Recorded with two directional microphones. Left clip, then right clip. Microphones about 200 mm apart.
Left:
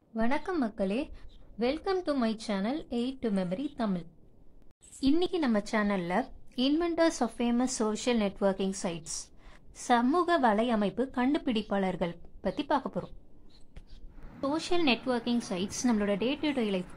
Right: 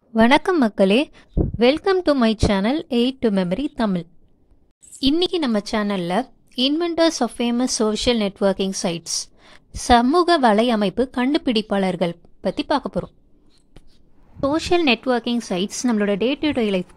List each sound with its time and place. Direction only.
0.1 s a woman's voice: 50° right (ahead or behind)
5.2 s speech: 30° right (ahead or behind)
14.4 s speech: 35° right (ahead or behind)